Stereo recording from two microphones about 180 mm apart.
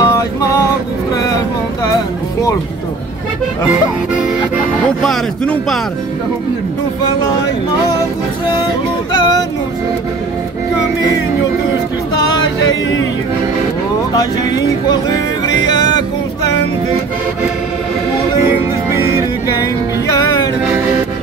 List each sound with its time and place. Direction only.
0.0 s music: 20° left (ahead or behind)
1.1 s vehicle: 20° left (ahead or behind)
5.0 s speech: 5° left (ahead or behind)
14.1 s music: 25° left (ahead or behind)
19.6 s music: 20° left (ahead or behind)